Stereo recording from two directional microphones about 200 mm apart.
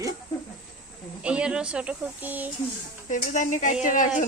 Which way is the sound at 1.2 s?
5° right (ahead or behind).